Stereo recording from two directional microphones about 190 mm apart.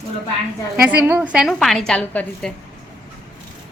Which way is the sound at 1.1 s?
10° right (ahead or behind).